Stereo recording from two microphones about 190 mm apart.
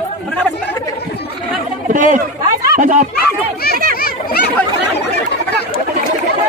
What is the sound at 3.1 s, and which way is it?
Speech, 55° left (ahead or behind).